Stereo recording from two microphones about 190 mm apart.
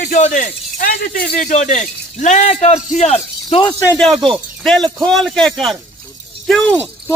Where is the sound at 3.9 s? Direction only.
5° left (ahead or behind).